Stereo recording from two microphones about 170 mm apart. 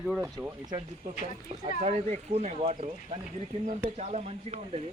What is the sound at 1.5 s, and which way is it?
Speech, 40° right (ahead or behind).